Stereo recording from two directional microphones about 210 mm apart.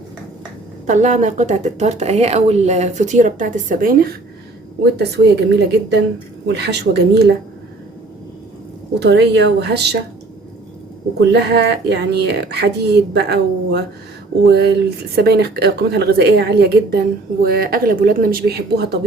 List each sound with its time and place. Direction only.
0.9 s a woman's voice: 35° right (ahead or behind); by 7.2 s 55° right (ahead or behind)
9.0 s a woman's voice: 55° right (ahead or behind)
11.2 s a woman's voice: 50° right (ahead or behind)